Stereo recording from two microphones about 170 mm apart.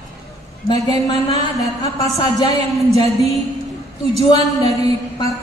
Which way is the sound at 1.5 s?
20° left (ahead or behind).